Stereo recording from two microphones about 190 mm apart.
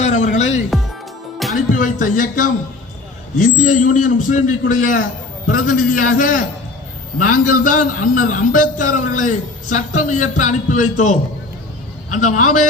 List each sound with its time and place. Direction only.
0.0 s music: 40° left (ahead or behind)
1.7 s music: 45° left (ahead or behind)
3.3 s a man's voice: 45° left (ahead or behind)
12.1 s a man's voice: 40° left (ahead or behind)